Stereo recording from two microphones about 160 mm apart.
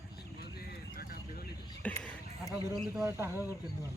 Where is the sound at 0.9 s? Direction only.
70° left (ahead or behind).